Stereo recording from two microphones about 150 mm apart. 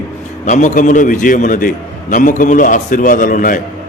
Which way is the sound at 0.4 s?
55° left (ahead or behind).